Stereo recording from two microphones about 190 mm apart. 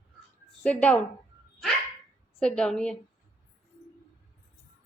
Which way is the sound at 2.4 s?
5° left (ahead or behind).